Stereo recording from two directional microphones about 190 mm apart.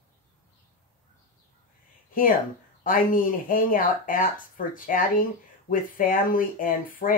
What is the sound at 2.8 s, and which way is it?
Speech, 45° left (ahead or behind).